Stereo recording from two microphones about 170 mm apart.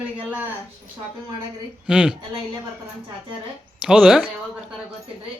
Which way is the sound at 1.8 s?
5° right (ahead or behind).